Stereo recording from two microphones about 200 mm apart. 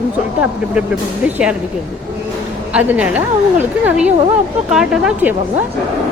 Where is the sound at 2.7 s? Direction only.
5° right (ahead or behind).